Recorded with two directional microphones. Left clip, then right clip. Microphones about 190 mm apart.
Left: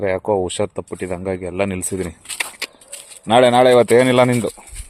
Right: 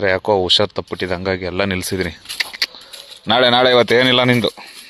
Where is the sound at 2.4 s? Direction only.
Centre (ahead or behind).